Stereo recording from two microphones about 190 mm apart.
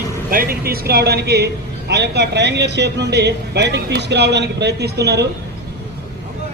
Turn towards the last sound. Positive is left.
turn(degrees=-60)  # may be behind; listen again after turning